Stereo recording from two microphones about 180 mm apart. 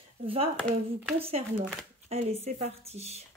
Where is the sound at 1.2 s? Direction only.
35° right (ahead or behind).